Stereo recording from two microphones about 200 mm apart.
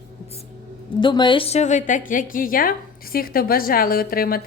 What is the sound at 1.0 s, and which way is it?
A woman's voice, 25° left (ahead or behind).